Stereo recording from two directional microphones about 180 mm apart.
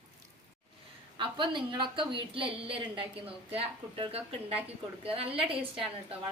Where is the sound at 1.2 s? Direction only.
25° right (ahead or behind).